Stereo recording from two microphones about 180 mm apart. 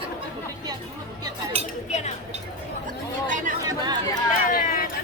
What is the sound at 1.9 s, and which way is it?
Speech, 40° left (ahead or behind).